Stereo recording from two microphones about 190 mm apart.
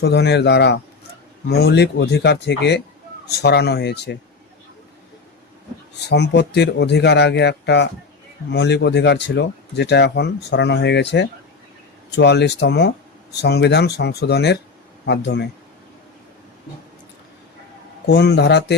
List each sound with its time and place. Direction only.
0.0 s speech: 60° left (ahead or behind)
6.1 s speech: 60° left (ahead or behind)
18.0 s speech: 60° left (ahead or behind)